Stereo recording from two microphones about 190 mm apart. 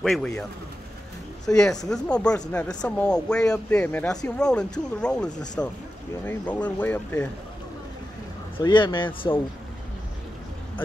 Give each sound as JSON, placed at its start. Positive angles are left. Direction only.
{"t": 0.0, "sound": "speech", "side_deg": 5}
{"t": 1.5, "sound": "speech", "side_deg": 5}
{"t": 8.5, "sound": "speech", "side_deg": 25}